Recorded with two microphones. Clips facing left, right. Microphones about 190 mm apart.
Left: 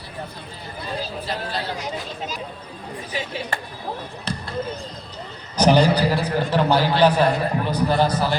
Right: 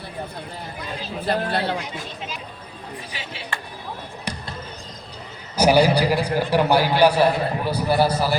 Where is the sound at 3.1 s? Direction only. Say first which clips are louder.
Left 9 dB; 45° left (ahead or behind).